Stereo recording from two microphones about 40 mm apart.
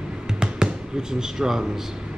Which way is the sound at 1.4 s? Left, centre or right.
Centre.